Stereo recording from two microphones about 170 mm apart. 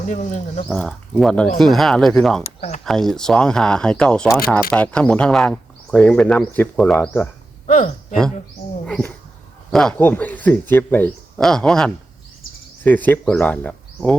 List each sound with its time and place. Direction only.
0.1 s speech: 45° left (ahead or behind)
0.7 s speech: 5° left (ahead or behind)
2.6 s speech: 40° left (ahead or behind)
2.8 s speech: centre (ahead or behind)
7.7 s speech: 50° left (ahead or behind)
8.9 s speech: 5° left (ahead or behind)